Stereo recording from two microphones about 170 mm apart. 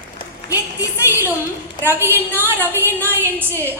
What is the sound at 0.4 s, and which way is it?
Speech, 20° left (ahead or behind).